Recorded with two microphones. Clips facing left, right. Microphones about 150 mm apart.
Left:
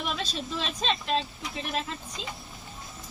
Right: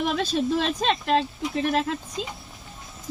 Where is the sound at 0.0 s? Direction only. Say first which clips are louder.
Right 9 dB; 55° right (ahead or behind).